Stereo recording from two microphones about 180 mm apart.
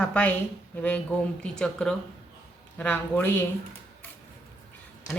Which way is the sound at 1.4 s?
5° left (ahead or behind).